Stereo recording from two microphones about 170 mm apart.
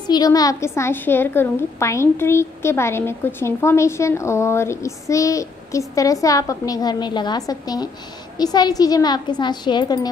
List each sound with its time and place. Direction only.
0.1 s a woman's voice: 20° left (ahead or behind)